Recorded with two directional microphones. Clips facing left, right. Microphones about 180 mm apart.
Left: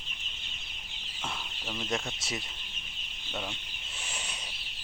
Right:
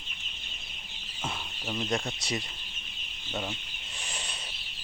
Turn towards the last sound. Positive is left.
turn(degrees=10)  # may be behind; listen again after turning